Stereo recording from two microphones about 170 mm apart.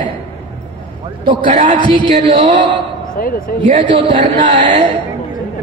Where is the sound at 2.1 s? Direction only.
45° right (ahead or behind).